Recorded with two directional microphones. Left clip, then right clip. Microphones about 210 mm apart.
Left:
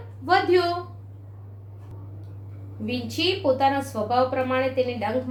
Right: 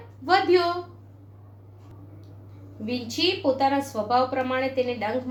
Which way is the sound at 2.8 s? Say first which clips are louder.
Even; 25° right (ahead or behind).